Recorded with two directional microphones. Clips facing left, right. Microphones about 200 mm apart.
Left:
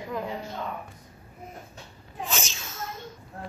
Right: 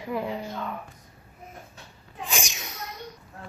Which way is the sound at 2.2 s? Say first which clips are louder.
Even; 15° right (ahead or behind).